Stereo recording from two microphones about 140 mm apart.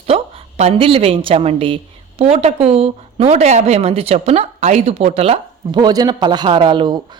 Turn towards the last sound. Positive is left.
turn(degrees=-35)  # may be behind; listen again after turning